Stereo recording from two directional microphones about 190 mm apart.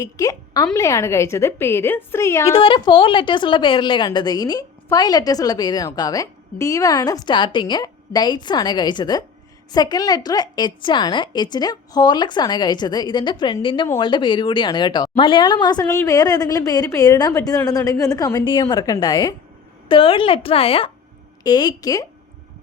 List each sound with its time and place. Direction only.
0.0 s a woman's voice: 15° left (ahead or behind)
2.5 s a woman's voice: 25° left (ahead or behind)